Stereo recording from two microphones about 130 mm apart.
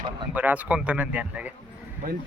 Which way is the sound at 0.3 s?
10° right (ahead or behind).